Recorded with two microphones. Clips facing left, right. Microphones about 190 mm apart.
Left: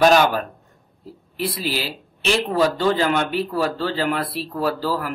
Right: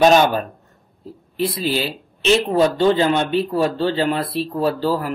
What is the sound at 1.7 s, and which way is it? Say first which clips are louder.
Speech: right 4 dB; 20° right (ahead or behind).